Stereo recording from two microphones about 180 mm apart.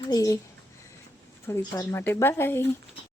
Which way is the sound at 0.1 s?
20° left (ahead or behind).